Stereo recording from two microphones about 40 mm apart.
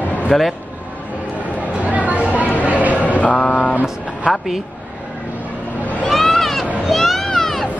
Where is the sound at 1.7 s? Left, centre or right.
Right.